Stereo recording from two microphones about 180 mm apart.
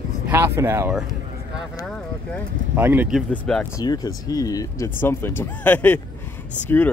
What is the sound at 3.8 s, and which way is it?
Speech, 20° left (ahead or behind).